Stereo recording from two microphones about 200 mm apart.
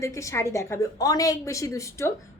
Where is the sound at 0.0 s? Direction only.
15° left (ahead or behind).